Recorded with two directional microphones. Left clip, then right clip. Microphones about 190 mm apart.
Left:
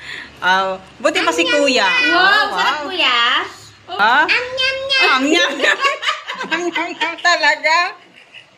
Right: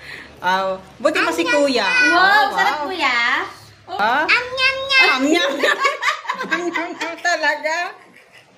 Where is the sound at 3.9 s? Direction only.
5° right (ahead or behind).